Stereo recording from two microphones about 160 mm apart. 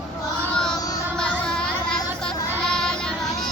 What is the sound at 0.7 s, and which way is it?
Child singing, 20° left (ahead or behind).